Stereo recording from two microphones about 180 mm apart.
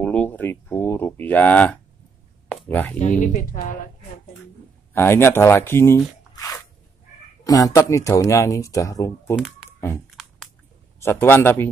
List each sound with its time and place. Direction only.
0.0 s speech: 10° left (ahead or behind)
2.5 s a sound: 10° left (ahead or behind)
3.0 s speech: 40° left (ahead or behind)
4.9 s speech: 15° left (ahead or behind)
9.3 s a sound: 5° right (ahead or behind)
9.8 s speech: 15° left (ahead or behind)